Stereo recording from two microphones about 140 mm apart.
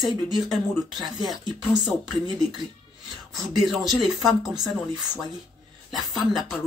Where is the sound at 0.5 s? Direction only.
Centre (ahead or behind).